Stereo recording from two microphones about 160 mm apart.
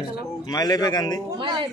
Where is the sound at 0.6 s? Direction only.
25° left (ahead or behind).